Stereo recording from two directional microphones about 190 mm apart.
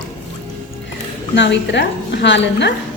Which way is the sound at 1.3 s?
70° left (ahead or behind).